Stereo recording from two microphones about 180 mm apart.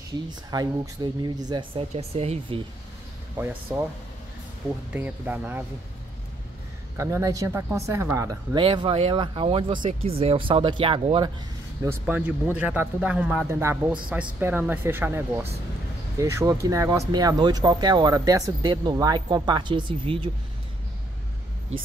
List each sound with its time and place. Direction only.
0.3 s speech: 20° right (ahead or behind)
3.3 s speech: 10° right (ahead or behind)
4.9 s speech: 10° right (ahead or behind)
7.0 s speech: 15° right (ahead or behind)
11.8 s speech: 10° right (ahead or behind); by 20.2 s 30° right (ahead or behind)